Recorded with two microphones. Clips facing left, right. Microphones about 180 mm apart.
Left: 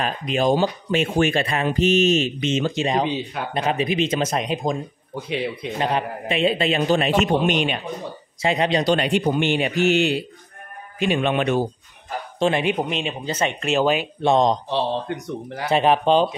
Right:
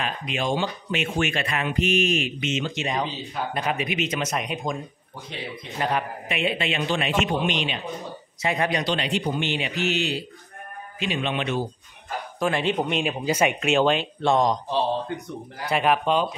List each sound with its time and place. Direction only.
0.0 s speech: 40° left (ahead or behind)
5.8 s speech: 25° left (ahead or behind); by 7.8 s 50° left (ahead or behind)
8.4 s speech: 25° left (ahead or behind)
8.8 s a man's voice: 50° left (ahead or behind)
12.4 s a man's voice: 25° left (ahead or behind)
12.7 s speech: centre (ahead or behind)
14.2 s speech: 20° left (ahead or behind)
14.7 s speech: 80° left
15.7 s speech: 30° left (ahead or behind)